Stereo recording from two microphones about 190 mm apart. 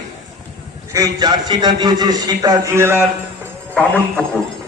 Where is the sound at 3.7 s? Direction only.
5° left (ahead or behind).